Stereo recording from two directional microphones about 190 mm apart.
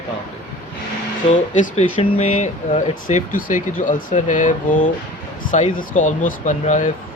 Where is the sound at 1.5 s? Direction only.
30° left (ahead or behind).